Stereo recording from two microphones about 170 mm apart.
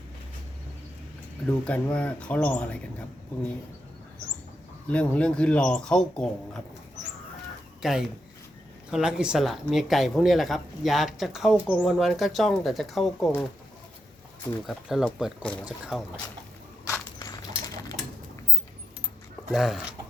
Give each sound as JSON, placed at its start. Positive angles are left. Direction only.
{"t": 1.5, "sound": "speech", "side_deg": 10}
{"t": 4.9, "sound": "speech", "side_deg": 5}
{"t": 7.8, "sound": "speech", "side_deg": -5}
{"t": 14.7, "sound": "speech", "side_deg": 0}
{"t": 16.8, "sound": "bird", "side_deg": 20}
{"t": 19.5, "sound": "speech", "side_deg": 0}